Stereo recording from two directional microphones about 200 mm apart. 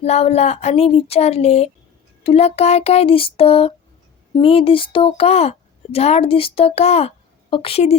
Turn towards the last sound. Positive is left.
turn(degrees=30)  # may be behind; listen again after turning